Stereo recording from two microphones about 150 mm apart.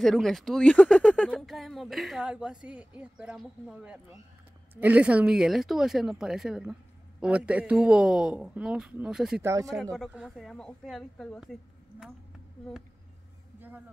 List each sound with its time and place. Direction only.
0.0 s speech: centre (ahead or behind)
9.4 s speech: 20° right (ahead or behind)
9.9 s speech: centre (ahead or behind)
13.6 s a sound: 10° right (ahead or behind)